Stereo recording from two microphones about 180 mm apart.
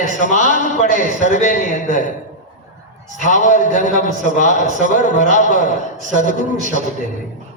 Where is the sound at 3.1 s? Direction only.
45° left (ahead or behind).